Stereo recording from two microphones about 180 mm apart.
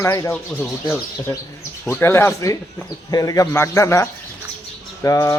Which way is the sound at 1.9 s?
15° left (ahead or behind).